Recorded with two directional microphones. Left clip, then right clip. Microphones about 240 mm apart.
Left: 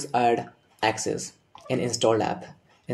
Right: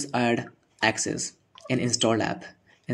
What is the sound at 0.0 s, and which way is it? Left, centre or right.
Speech, right.